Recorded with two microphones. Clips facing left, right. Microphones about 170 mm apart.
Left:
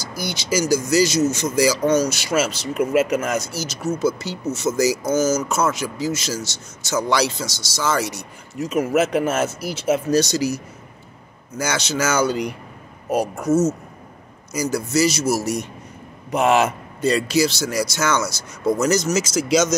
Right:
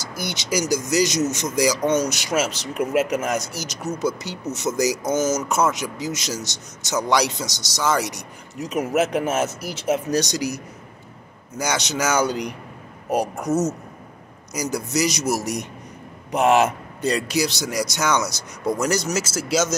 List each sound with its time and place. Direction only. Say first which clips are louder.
0.0 s a man's voice: left 2 dB; 20° right (ahead or behind); by 19.7 s 5° right (ahead or behind)